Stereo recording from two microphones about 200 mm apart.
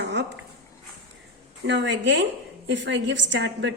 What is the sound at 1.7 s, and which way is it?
Speech, 60° right (ahead or behind).